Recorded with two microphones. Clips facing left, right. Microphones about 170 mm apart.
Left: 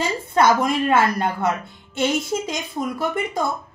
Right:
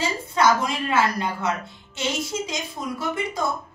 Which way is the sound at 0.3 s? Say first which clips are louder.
Left 3 dB; 55° left (ahead or behind).